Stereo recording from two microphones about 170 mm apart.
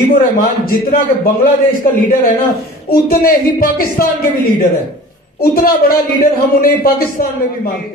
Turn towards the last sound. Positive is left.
turn(degrees=55)  # may be behind; listen again after turning